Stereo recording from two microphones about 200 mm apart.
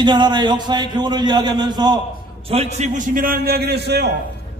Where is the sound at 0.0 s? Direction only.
20° right (ahead or behind).